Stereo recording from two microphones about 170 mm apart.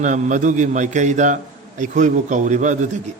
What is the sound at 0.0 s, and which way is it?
A man's voice, 45° right (ahead or behind).